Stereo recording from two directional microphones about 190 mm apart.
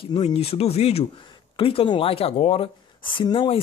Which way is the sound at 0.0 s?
30° left (ahead or behind).